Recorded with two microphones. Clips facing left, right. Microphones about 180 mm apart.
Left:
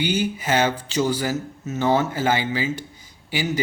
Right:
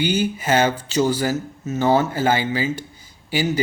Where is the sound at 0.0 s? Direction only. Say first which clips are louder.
Right 2 dB; 45° right (ahead or behind).